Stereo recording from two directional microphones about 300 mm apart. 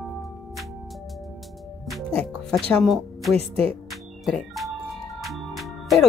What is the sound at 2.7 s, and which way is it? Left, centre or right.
Speech, centre.